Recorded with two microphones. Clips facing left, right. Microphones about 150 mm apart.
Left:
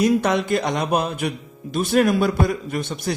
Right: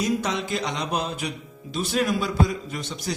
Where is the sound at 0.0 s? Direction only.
60° left (ahead or behind).